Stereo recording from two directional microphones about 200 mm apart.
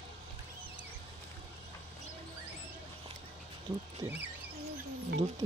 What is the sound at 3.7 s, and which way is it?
Rodents, 15° right (ahead or behind).